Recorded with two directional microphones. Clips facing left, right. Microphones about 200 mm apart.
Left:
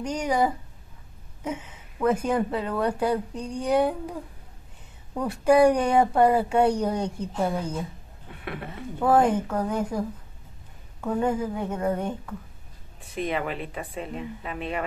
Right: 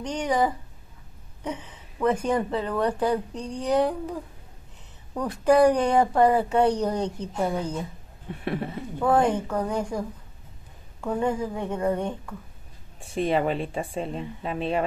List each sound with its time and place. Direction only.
0.0 s speech: 10° left (ahead or behind)
9.0 s speech: 5° left (ahead or behind)
13.0 s speech: 30° right (ahead or behind)